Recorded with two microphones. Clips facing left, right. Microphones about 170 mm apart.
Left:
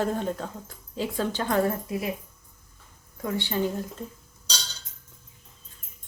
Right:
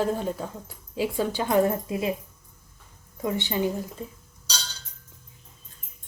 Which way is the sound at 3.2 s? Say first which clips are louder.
Right 1 dB; 15° right (ahead or behind).